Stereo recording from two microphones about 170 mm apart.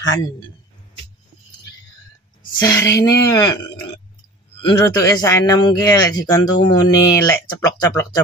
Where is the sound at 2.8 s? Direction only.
20° left (ahead or behind).